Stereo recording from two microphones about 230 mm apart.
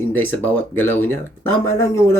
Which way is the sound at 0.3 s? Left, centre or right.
Centre.